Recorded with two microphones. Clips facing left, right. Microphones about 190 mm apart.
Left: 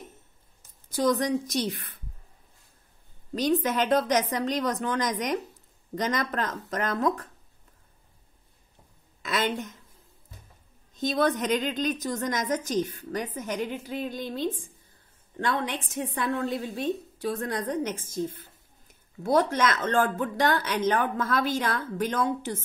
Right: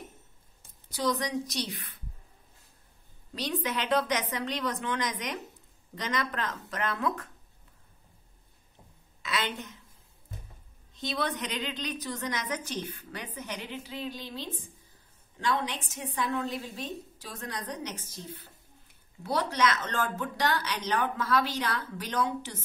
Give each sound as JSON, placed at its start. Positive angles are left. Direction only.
{"t": 0.8, "sound": "a woman's voice", "side_deg": 50}
{"t": 3.3, "sound": "a woman's voice", "side_deg": 45}
{"t": 9.2, "sound": "a woman's voice", "side_deg": 45}
{"t": 11.0, "sound": "a woman's voice", "side_deg": 45}